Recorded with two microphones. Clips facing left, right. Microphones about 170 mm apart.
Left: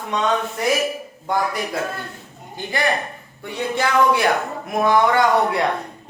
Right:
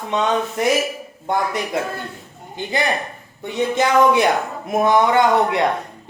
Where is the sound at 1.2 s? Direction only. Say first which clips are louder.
Right 1 dB; 20° right (ahead or behind).